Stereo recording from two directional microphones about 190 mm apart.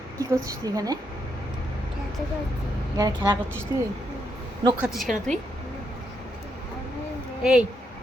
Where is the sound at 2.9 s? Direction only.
20° right (ahead or behind).